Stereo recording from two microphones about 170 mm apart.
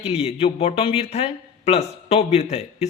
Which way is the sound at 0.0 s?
35° left (ahead or behind).